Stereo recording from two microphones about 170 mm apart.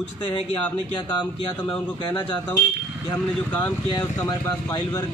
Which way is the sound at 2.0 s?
25° left (ahead or behind).